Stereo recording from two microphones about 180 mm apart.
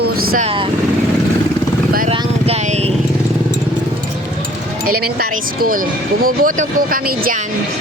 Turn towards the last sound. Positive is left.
turn(degrees=-50)  # may be behind; listen again after turning